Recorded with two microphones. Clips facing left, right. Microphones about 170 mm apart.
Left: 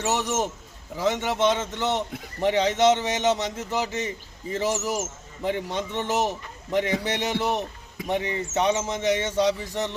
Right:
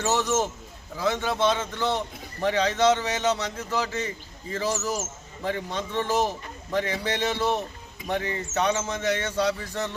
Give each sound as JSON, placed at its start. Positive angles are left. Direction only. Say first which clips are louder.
{"t": 0.1, "sound": "a man's voice", "louder": "right 2 dB", "side_deg": 15}